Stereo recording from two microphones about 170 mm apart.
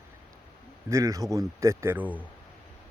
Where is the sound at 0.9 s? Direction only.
20° right (ahead or behind).